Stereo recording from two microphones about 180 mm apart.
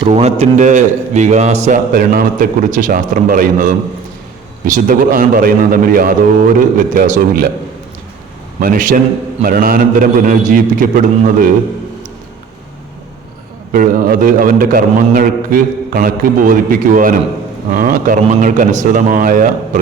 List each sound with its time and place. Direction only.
0.0 s a man's voice: 35° right (ahead or behind); by 7.5 s 55° right (ahead or behind)
8.6 s a man's voice: 50° right (ahead or behind)
13.7 s a man's voice: 50° right (ahead or behind)